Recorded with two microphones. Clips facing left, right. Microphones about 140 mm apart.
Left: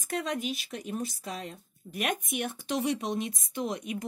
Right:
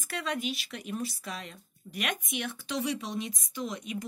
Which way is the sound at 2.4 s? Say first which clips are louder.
Left 3 dB; 50° left (ahead or behind).